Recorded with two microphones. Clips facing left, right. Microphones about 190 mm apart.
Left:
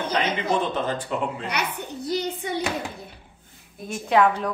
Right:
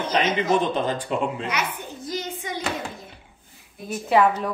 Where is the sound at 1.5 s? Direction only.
65° left (ahead or behind).